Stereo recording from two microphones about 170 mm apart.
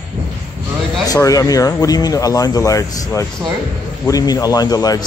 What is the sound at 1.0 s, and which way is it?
Speech, 20° left (ahead or behind).